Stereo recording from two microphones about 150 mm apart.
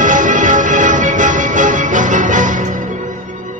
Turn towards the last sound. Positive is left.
turn(degrees=-60)  # may be behind; listen again after turning